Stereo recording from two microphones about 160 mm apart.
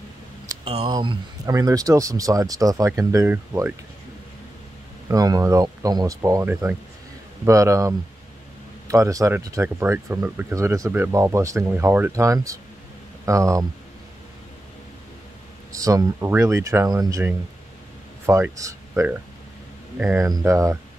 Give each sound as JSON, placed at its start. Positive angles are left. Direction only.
{"t": 0.7, "sound": "speech", "side_deg": -35}
{"t": 0.9, "sound": "speech", "side_deg": -25}
{"t": 5.0, "sound": "speech", "side_deg": -20}
{"t": 15.7, "sound": "speech", "side_deg": -20}
{"t": 20.2, "sound": "speech", "side_deg": -20}